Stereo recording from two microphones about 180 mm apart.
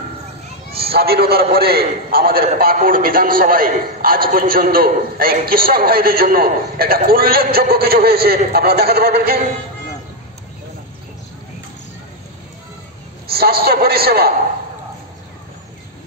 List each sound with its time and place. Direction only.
0.7 s a man's voice: 60° right (ahead or behind)
13.3 s a man's voice: 60° right (ahead or behind)